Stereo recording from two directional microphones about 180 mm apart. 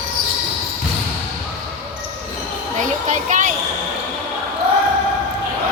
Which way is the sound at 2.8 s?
45° right (ahead or behind).